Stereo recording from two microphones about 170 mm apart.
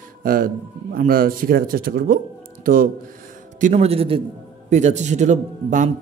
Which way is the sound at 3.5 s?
40° right (ahead or behind).